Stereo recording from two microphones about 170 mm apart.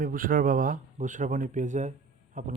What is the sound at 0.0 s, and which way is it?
Speech, 55° right (ahead or behind).